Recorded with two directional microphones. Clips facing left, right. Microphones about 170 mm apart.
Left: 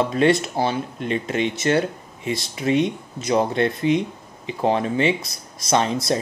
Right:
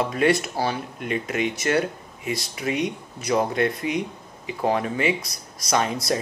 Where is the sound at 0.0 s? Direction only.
25° left (ahead or behind).